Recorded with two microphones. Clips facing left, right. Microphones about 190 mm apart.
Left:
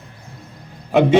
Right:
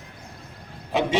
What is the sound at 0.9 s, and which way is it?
Speech, 55° left (ahead or behind).